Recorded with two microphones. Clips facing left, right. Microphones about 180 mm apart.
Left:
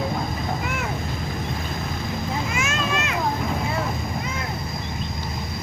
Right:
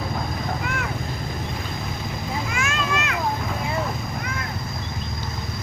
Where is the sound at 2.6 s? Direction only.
20° left (ahead or behind).